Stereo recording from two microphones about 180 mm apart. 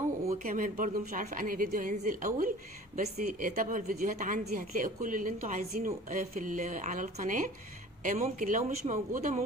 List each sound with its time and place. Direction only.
0.4 s a woman's voice: 50° right (ahead or behind)